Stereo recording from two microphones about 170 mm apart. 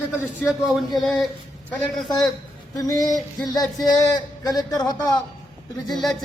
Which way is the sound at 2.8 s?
20° left (ahead or behind).